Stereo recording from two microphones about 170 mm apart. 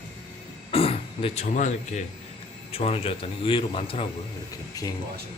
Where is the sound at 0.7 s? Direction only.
35° left (ahead or behind).